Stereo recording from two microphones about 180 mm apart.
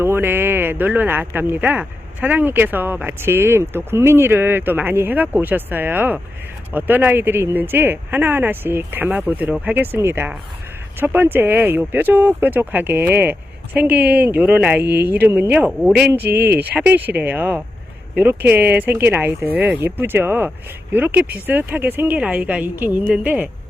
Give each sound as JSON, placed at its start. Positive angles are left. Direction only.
{"t": 0.0, "sound": "speech", "side_deg": -10}
{"t": 16.3, "sound": "speech", "side_deg": -65}
{"t": 16.6, "sound": "speech", "side_deg": -10}